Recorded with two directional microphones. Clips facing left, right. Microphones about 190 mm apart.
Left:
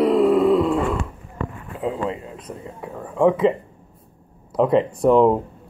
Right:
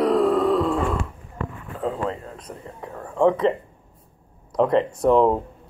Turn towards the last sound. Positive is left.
turn(degrees=5)  # may be behind; listen again after turning